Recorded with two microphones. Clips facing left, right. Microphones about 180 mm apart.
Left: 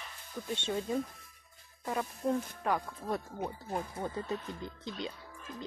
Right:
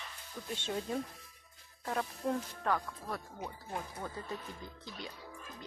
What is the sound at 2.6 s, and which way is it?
Speech, 20° left (ahead or behind).